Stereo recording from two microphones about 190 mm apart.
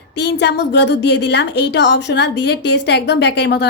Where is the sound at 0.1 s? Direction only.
65° left (ahead or behind).